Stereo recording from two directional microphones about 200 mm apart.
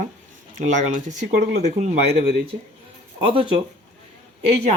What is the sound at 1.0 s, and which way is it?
Speech, 35° right (ahead or behind).